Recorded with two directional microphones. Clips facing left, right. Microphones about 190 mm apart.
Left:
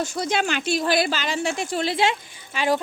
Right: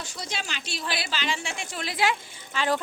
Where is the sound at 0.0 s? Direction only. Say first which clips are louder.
Left 12 dB; 50° left (ahead or behind); by 2.1 s 25° left (ahead or behind).